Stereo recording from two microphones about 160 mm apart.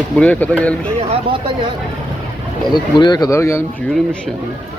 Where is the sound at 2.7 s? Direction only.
25° left (ahead or behind).